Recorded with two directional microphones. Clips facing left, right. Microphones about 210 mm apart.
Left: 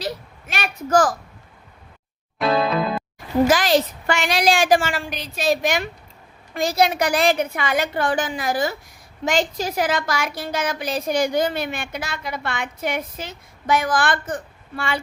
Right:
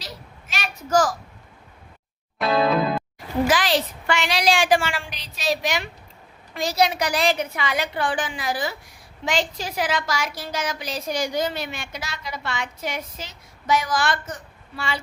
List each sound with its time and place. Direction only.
0.0 s a sound: 55° left (ahead or behind)
2.4 s music: centre (ahead or behind)
3.4 s a woman's voice: 45° left (ahead or behind)